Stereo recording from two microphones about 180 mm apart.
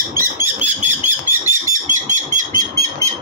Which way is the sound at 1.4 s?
45° right (ahead or behind).